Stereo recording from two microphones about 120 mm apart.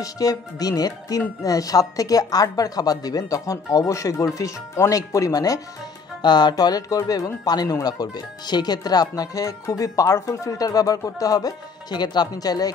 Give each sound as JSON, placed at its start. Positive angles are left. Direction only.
{"t": 0.0, "sound": "speech", "side_deg": 30}